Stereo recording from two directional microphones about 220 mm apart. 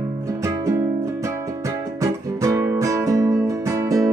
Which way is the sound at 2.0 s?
15° right (ahead or behind).